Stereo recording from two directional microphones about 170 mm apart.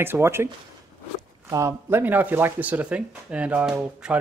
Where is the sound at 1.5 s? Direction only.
20° right (ahead or behind).